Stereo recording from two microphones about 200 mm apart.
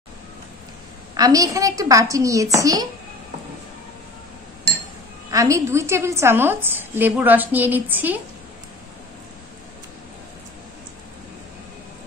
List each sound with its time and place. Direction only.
1.1 s a woman's voice: 20° right (ahead or behind)
5.3 s a woman's voice: 15° right (ahead or behind)